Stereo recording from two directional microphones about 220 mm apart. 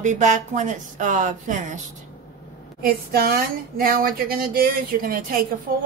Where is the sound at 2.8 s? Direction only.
45° right (ahead or behind).